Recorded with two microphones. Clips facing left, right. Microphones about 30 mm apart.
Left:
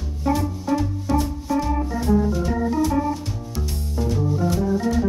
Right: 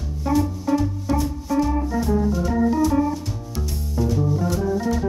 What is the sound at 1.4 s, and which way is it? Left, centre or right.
Organ, centre.